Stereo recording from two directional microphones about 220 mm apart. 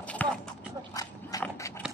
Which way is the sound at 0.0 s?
5° left (ahead or behind).